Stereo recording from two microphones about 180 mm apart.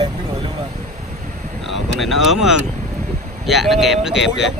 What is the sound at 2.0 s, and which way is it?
Speech, centre (ahead or behind).